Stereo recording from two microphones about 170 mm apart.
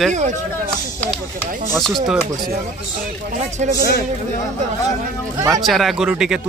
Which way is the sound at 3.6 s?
45° right (ahead or behind).